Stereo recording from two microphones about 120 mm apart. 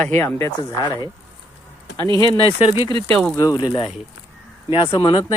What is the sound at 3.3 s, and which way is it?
Speech, 30° left (ahead or behind).